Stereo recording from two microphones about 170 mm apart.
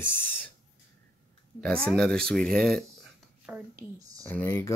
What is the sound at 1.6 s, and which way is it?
Speech, 5° left (ahead or behind).